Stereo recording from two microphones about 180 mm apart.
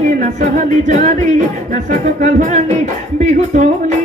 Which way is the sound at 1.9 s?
45° right (ahead or behind).